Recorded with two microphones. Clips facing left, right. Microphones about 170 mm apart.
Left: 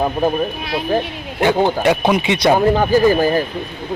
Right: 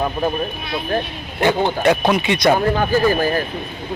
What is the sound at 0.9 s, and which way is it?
Speech, 10° left (ahead or behind).